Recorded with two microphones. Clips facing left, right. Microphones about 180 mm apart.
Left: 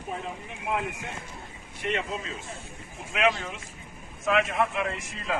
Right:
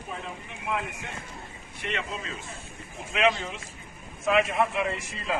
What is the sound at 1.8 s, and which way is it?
Speech, 40° left (ahead or behind).